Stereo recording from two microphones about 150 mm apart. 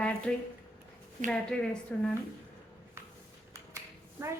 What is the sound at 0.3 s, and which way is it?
A woman's voice, 5° left (ahead or behind).